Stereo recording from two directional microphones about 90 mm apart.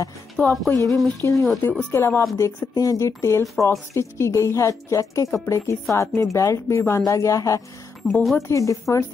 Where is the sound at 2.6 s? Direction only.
40° left (ahead or behind).